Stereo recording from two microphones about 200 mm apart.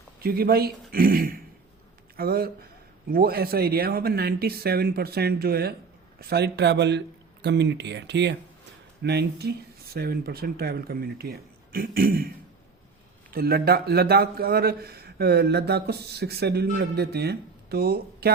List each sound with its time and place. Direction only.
0.2 s a man's voice: 50° right (ahead or behind)
13.3 s a man's voice: 50° right (ahead or behind)